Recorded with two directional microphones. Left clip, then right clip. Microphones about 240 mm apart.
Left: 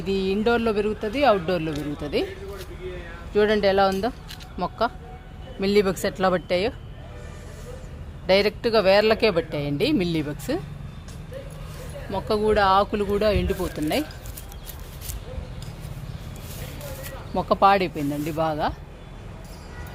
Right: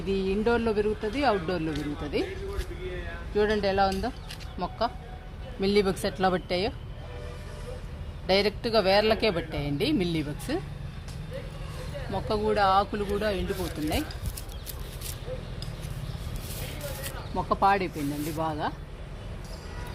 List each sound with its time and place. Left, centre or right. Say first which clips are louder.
0.0 s speech: left 4 dB; left
3.3 s speech: left 6 dB; left
8.3 s speech: left 5 dB; left
12.1 s speech: left 5 dB; left
17.3 s speech: left 6 dB; left